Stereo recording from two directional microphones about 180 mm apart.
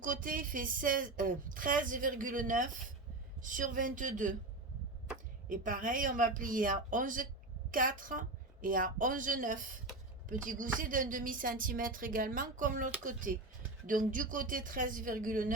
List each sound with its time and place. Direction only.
0.0 s a woman's voice: 50° right (ahead or behind)
5.5 s a woman's voice: 50° right (ahead or behind)